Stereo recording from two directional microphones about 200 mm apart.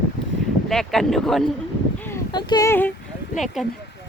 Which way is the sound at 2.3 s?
20° left (ahead or behind).